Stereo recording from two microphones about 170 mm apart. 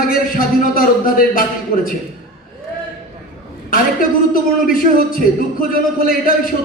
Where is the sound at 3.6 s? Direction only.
55° left (ahead or behind).